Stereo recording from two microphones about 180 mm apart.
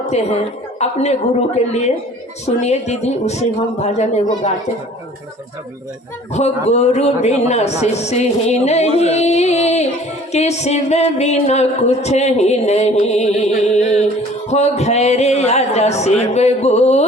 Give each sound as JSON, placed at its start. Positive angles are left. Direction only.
{"t": 0.1, "sound": "speech", "side_deg": 35}
{"t": 6.7, "sound": "speech", "side_deg": 40}